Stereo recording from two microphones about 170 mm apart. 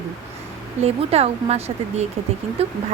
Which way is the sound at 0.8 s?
40° right (ahead or behind).